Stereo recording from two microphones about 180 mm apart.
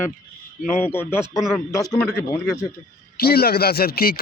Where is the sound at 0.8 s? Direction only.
10° left (ahead or behind).